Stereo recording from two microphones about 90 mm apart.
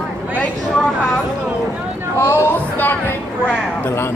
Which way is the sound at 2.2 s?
30° left (ahead or behind).